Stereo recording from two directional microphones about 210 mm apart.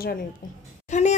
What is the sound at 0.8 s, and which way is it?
Speech, 35° left (ahead or behind).